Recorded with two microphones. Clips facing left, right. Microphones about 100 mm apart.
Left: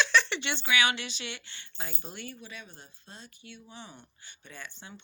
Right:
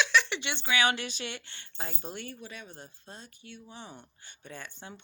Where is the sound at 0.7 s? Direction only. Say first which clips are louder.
Right 1 dB; 35° right (ahead or behind).